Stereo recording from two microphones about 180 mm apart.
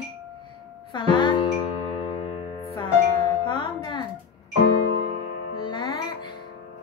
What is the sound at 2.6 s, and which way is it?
Music, 30° left (ahead or behind).